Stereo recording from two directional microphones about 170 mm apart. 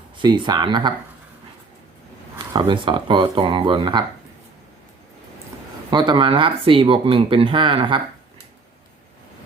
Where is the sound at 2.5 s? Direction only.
30° right (ahead or behind).